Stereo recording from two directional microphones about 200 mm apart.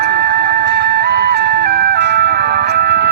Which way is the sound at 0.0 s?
55° right (ahead or behind).